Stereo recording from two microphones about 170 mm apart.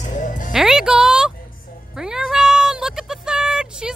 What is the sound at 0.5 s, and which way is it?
Music, 5° right (ahead or behind).